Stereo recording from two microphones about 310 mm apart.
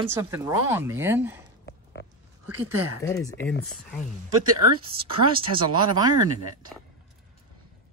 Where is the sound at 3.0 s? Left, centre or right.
Centre.